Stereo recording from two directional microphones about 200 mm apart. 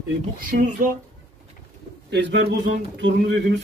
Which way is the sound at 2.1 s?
60° right (ahead or behind).